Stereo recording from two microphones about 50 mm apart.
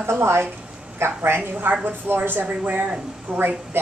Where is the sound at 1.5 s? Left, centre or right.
Right.